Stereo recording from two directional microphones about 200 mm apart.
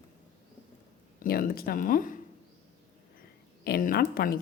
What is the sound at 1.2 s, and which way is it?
Speech, 45° left (ahead or behind).